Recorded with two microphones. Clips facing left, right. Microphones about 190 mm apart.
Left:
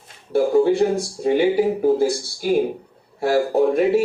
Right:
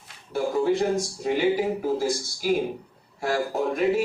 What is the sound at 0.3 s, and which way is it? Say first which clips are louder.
Speech: left 7 dB; 30° left (ahead or behind).